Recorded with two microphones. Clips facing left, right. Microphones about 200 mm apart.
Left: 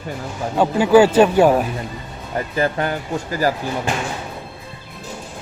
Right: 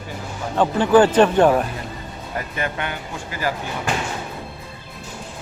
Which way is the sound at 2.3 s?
30° left (ahead or behind).